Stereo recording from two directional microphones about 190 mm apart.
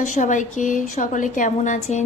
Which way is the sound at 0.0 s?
40° left (ahead or behind).